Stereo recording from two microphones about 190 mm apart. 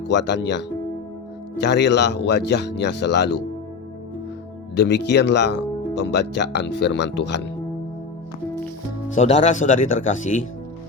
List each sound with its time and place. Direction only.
0.1 s speech: 65° left (ahead or behind)
1.6 s speech: 65° left (ahead or behind)
4.8 s speech: 65° left (ahead or behind)
9.1 s speech: 35° left (ahead or behind)